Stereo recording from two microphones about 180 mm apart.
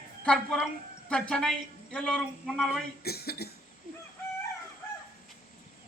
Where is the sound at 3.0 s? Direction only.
60° left (ahead or behind).